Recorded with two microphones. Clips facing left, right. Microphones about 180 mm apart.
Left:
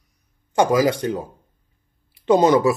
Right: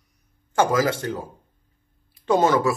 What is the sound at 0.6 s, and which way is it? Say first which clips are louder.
Speech: left 3 dB; 15° left (ahead or behind).